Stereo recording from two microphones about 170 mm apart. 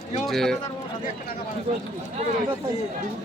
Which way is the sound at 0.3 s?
Centre (ahead or behind).